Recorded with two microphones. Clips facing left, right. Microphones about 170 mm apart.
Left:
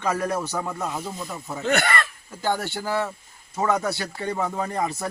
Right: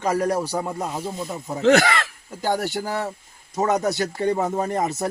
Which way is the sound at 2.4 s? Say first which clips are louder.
Right 2 dB; 40° right (ahead or behind).